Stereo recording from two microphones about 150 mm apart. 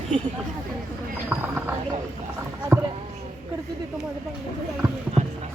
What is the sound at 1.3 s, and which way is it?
Speech, 15° right (ahead or behind).